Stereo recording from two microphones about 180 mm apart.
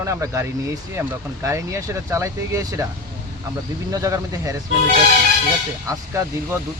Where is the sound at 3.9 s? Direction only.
20° right (ahead or behind).